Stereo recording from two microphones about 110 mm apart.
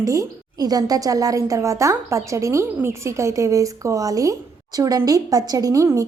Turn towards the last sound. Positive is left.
turn(degrees=-30)  # may be behind; listen again after turning